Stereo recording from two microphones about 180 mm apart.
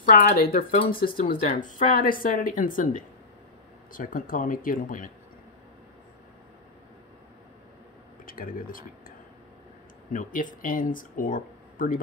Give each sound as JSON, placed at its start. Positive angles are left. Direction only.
{"t": 0.1, "sound": "speech", "side_deg": 55}
{"t": 8.3, "sound": "speech", "side_deg": 50}
{"t": 10.1, "sound": "speech", "side_deg": 45}